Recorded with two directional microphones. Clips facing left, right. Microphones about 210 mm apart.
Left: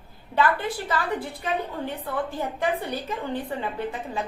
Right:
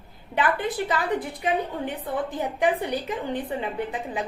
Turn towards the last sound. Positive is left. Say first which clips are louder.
# right 1 dB
turn(degrees=-15)  # may be behind; listen again after turning